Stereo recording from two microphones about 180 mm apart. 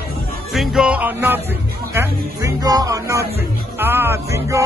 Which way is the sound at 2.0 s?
20° right (ahead or behind).